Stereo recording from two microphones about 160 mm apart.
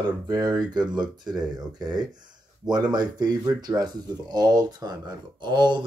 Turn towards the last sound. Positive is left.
turn(degrees=-30)  # may be behind; listen again after turning